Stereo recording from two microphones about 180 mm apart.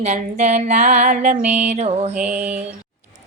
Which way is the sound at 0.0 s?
40° right (ahead or behind).